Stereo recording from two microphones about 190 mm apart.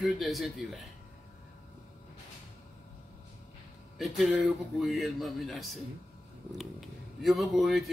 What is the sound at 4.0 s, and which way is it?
A man's voice, centre (ahead or behind).